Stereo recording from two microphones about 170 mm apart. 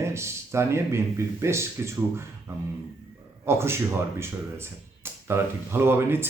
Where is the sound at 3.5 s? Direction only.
15° right (ahead or behind).